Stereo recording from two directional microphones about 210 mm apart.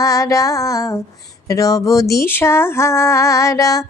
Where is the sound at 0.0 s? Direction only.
15° left (ahead or behind).